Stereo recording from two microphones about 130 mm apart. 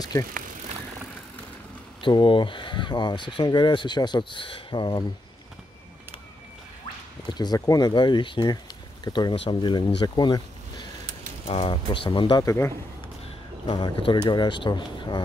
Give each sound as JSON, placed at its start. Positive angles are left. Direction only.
{"t": 2.0, "sound": "speech", "side_deg": 40}
{"t": 7.2, "sound": "speech", "side_deg": 30}
{"t": 11.4, "sound": "speech", "side_deg": 45}
{"t": 12.4, "sound": "speech", "side_deg": 20}
{"t": 13.7, "sound": "speech", "side_deg": 40}